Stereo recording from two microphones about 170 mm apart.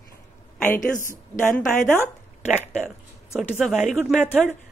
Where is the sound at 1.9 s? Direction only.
15° right (ahead or behind).